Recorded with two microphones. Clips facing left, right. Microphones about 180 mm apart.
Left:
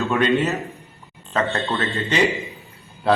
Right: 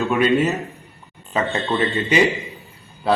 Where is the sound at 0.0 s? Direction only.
15° right (ahead or behind).